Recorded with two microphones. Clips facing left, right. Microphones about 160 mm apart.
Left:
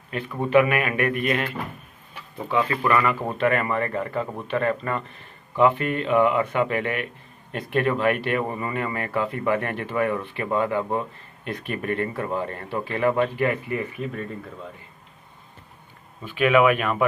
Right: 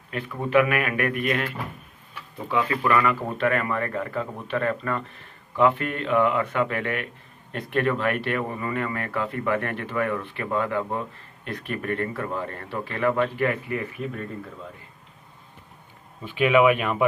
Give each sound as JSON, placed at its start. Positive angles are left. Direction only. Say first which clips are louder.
{"t": 0.1, "sound": "speech", "louder": "left 2 dB", "side_deg": 0}
{"t": 2.5, "sound": "speech", "louder": "left 1 dB", "side_deg": 0}
{"t": 16.3, "sound": "speech", "louder": "even", "side_deg": -25}